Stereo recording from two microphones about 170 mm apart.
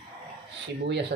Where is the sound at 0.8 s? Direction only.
90° right.